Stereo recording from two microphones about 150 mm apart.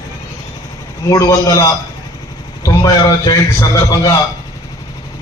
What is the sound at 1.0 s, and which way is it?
A man's voice, 20° left (ahead or behind).